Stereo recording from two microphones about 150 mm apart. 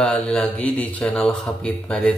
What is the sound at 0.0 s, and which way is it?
Speech, 5° left (ahead or behind).